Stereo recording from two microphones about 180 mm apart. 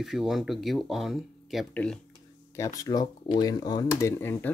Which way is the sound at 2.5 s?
15° left (ahead or behind).